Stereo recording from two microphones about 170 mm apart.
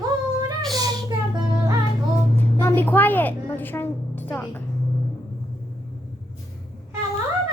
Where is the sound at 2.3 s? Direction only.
15° left (ahead or behind).